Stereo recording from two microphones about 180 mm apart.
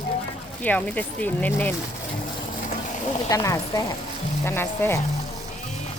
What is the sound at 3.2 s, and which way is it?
A woman's voice, 20° left (ahead or behind).